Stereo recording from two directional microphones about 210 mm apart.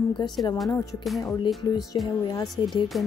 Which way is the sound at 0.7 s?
15° left (ahead or behind).